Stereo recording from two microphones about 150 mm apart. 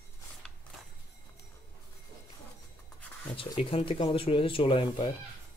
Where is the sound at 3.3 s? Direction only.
35° left (ahead or behind).